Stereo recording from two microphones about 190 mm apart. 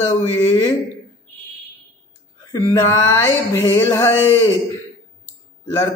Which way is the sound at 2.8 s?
15° left (ahead or behind).